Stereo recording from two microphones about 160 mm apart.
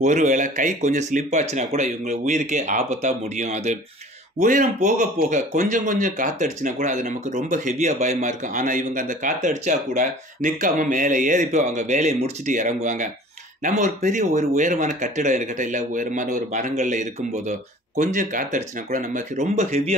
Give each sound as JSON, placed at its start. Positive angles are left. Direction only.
{"t": 0.0, "sound": "speech", "side_deg": -50}